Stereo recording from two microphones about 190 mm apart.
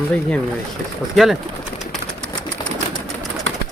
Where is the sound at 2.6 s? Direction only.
25° left (ahead or behind).